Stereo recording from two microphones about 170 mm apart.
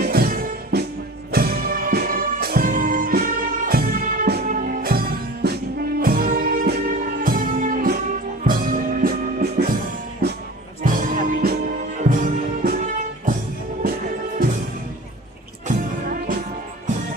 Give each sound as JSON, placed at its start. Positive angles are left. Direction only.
{"t": 0.0, "sound": "music", "side_deg": -60}
{"t": 10.8, "sound": "music", "side_deg": -55}
{"t": 13.8, "sound": "music", "side_deg": -55}
{"t": 15.7, "sound": "music", "side_deg": -55}